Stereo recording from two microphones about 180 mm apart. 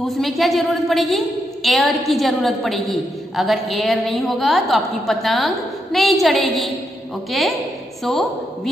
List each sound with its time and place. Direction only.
0.0 s a woman's voice: centre (ahead or behind)